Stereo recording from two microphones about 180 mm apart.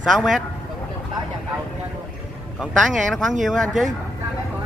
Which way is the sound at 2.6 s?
5° right (ahead or behind).